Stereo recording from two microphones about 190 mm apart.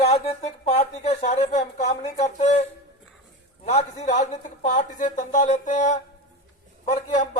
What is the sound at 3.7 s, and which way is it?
Speech, 35° left (ahead or behind).